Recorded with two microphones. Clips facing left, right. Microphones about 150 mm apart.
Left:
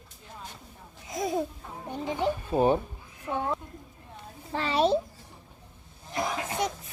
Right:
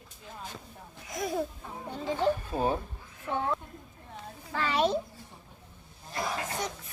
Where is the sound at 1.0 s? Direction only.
20° left (ahead or behind).